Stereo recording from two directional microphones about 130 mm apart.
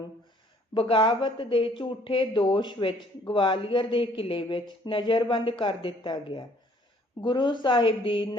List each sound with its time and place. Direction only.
0.7 s speech: 45° left (ahead or behind)